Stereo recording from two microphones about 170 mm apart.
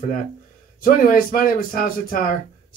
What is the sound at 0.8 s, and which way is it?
Speech, 55° left (ahead or behind).